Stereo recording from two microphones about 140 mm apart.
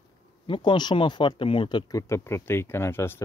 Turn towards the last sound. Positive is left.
turn(degrees=15)  # may be behind; listen again after turning